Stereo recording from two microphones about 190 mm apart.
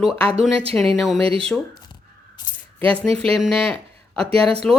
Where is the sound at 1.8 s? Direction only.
20° left (ahead or behind).